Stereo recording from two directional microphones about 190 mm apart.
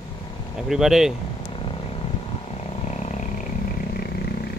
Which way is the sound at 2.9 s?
40° left (ahead or behind).